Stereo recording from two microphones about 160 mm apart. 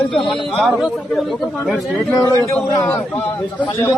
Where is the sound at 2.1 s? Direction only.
20° left (ahead or behind).